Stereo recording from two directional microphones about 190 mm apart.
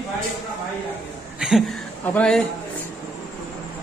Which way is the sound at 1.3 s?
5° right (ahead or behind).